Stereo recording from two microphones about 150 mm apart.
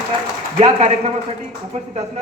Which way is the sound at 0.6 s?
45° right (ahead or behind).